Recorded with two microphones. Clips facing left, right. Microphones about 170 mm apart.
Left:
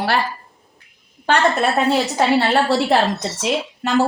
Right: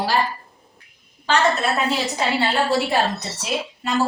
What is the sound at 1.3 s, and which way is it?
Speech, 60° left (ahead or behind).